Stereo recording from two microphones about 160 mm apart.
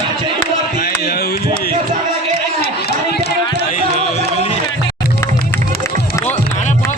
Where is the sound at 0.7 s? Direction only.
70° left (ahead or behind).